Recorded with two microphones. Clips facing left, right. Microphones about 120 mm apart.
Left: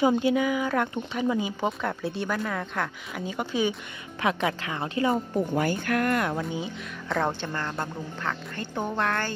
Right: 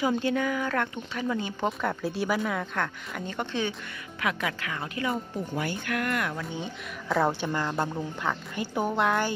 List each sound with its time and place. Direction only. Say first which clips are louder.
0.2 s speech: left 3 dB; 10° left (ahead or behind)
1.7 s speech: even; centre (ahead or behind)
4.2 s speech: left 4 dB; 30° left (ahead or behind)
5.5 s speech: left 3 dB; 45° left (ahead or behind)
7.1 s speech: right 2 dB; 5° right (ahead or behind)